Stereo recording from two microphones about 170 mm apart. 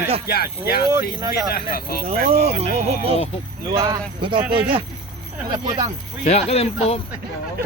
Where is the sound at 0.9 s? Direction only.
20° right (ahead or behind).